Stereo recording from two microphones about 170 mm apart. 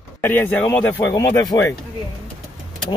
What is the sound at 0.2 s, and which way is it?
Speech, 10° left (ahead or behind).